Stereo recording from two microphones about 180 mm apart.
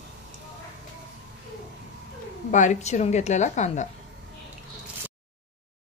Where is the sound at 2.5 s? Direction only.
45° left (ahead or behind).